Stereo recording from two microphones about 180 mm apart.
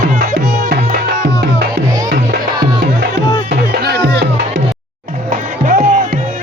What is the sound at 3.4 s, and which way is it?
Music, 60° right (ahead or behind).